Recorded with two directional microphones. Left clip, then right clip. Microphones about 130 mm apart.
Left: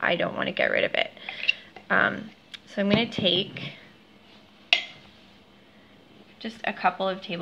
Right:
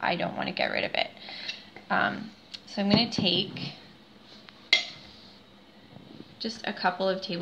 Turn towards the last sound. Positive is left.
turn(degrees=25)  # may be behind; listen again after turning